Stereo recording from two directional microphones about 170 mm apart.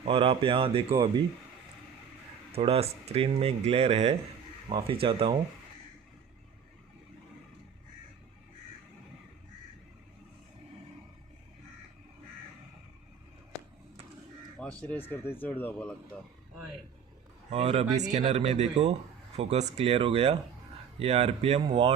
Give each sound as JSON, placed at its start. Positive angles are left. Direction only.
{"t": 0.0, "sound": "speech", "side_deg": -30}
{"t": 2.6, "sound": "speech", "side_deg": -35}
{"t": 14.6, "sound": "speech", "side_deg": 10}
{"t": 17.5, "sound": "speech", "side_deg": -35}